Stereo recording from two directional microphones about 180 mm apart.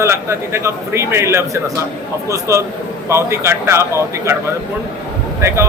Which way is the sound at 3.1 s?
15° right (ahead or behind).